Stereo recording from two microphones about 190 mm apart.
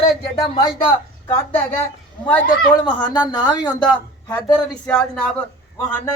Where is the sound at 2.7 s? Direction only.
25° left (ahead or behind).